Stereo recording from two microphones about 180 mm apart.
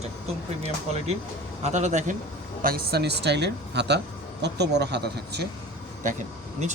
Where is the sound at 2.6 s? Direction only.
55° right (ahead or behind).